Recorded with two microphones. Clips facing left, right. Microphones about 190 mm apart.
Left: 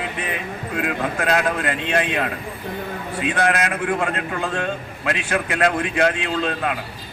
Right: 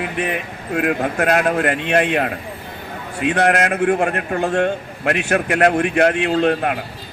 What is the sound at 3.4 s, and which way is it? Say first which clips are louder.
A man's voice: right 5 dB; 50° right (ahead or behind).